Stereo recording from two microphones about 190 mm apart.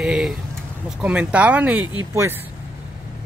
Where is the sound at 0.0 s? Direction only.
Centre (ahead or behind).